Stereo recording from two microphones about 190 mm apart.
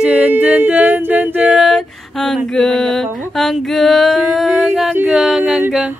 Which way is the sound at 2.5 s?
5° left (ahead or behind).